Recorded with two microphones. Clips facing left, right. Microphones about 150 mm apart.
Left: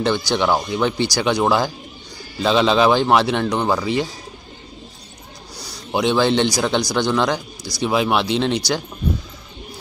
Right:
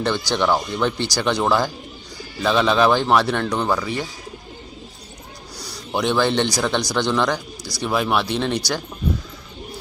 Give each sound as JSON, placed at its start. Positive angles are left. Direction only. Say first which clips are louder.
{"t": 0.0, "sound": "speech", "louder": "left 2 dB", "side_deg": 15}
{"t": 6.0, "sound": "speech", "louder": "left 2 dB", "side_deg": 15}